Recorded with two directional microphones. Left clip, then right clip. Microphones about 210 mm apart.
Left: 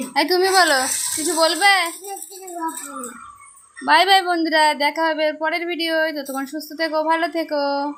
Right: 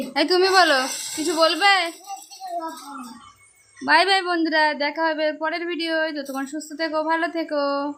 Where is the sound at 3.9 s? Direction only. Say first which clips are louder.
Left 3 dB; 5° right (ahead or behind).